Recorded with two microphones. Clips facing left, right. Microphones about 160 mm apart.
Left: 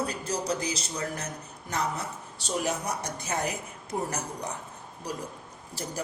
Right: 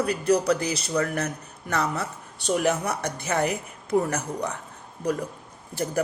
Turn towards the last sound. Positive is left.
turn(degrees=-55)  # may be behind; listen again after turning